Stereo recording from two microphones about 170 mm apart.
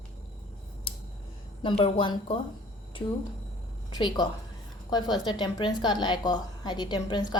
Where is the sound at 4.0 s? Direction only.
25° left (ahead or behind).